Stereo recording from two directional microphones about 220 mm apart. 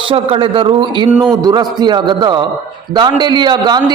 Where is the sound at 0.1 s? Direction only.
25° right (ahead or behind).